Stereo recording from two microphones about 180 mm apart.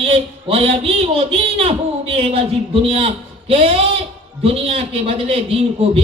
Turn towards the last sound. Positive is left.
turn(degrees=-30)  # may be behind; listen again after turning